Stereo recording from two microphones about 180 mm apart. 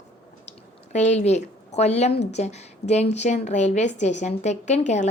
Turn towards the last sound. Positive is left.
turn(degrees=40)  # may be behind; listen again after turning